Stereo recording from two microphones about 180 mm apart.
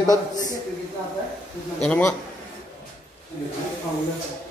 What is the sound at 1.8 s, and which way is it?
Speech, 10° left (ahead or behind).